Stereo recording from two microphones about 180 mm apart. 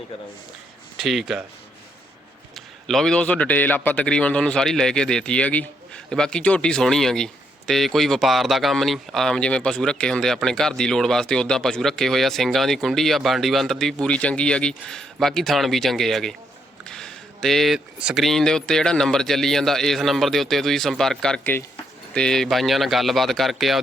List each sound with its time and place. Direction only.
0.9 s speech: centre (ahead or behind)
2.8 s speech: centre (ahead or behind)